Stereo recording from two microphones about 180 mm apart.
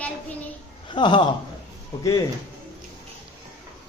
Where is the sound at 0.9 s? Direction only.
25° left (ahead or behind).